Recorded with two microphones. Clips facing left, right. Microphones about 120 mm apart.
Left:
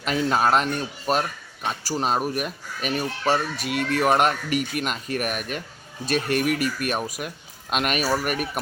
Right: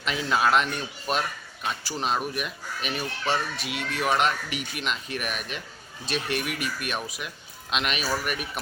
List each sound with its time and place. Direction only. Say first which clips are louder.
0.0 s a man's voice: left 3 dB; 45° left (ahead or behind)